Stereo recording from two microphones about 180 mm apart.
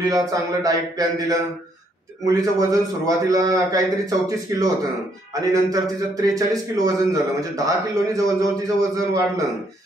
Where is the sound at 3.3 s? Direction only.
20° right (ahead or behind).